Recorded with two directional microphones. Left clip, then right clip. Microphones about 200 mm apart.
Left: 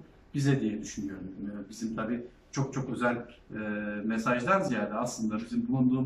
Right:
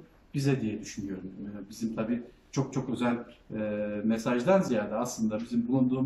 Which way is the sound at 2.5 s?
20° right (ahead or behind).